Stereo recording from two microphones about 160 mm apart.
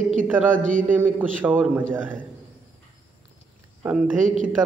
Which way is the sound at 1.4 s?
10° right (ahead or behind).